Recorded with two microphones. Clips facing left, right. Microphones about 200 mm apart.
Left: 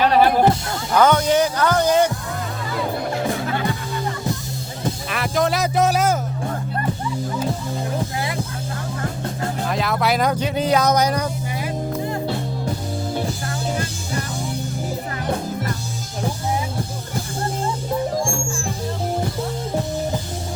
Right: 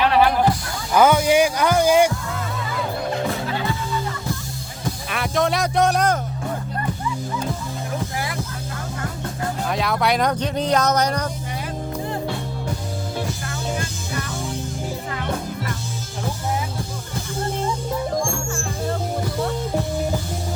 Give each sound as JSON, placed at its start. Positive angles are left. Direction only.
{"t": 0.0, "sound": "music", "side_deg": 40}
{"t": 0.9, "sound": "music", "side_deg": -10}
{"t": 5.0, "sound": "music", "side_deg": 0}
{"t": 9.6, "sound": "speech", "side_deg": 0}
{"t": 13.7, "sound": "music", "side_deg": 35}